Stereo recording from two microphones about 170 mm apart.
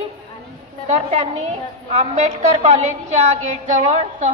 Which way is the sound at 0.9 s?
40° right (ahead or behind).